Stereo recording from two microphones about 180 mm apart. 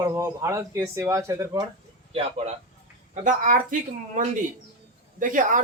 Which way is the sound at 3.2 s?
45° right (ahead or behind).